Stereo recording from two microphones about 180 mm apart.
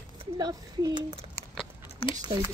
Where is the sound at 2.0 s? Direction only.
30° left (ahead or behind).